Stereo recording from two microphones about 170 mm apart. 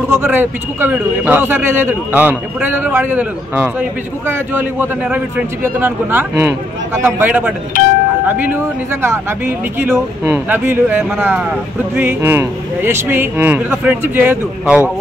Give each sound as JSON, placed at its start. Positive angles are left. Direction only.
{"t": 0.1, "sound": "a man's voice", "side_deg": -15}
{"t": 7.7, "sound": "speech", "side_deg": 55}
{"t": 8.3, "sound": "a man's voice", "side_deg": -15}